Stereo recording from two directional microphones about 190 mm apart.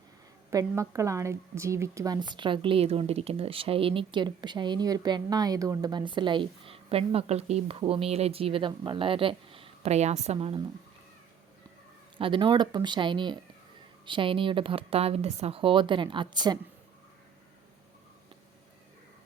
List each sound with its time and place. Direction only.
0.5 s a woman's voice: 15° right (ahead or behind)
12.1 s a woman's voice: 25° right (ahead or behind)